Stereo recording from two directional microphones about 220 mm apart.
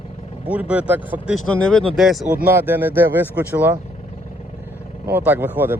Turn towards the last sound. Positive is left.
turn(degrees=-10)  # may be behind; listen again after turning